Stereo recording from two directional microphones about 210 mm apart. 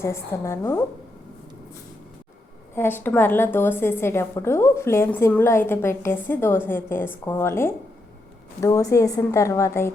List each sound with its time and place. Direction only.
0.0 s a woman's voice: 15° left (ahead or behind)
2.7 s a woman's voice: 10° left (ahead or behind)